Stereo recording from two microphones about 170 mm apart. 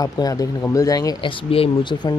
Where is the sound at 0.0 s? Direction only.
20° left (ahead or behind).